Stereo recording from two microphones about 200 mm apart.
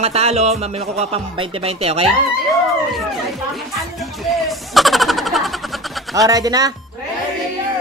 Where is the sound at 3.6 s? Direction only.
Centre (ahead or behind).